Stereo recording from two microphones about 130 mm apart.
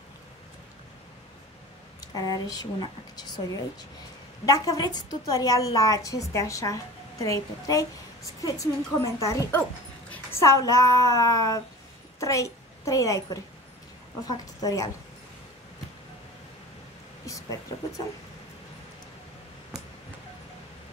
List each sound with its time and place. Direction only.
2.0 s speech: 30° left (ahead or behind)
4.5 s a woman's voice: 25° left (ahead or behind)
10.4 s a woman's voice: 25° left (ahead or behind)
17.3 s speech: 25° left (ahead or behind)